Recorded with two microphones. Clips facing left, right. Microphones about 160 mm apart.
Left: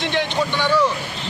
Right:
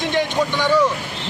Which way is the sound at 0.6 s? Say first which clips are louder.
Right 2 dB; 15° right (ahead or behind).